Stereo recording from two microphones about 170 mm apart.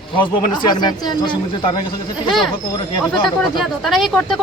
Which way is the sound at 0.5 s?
25° left (ahead or behind).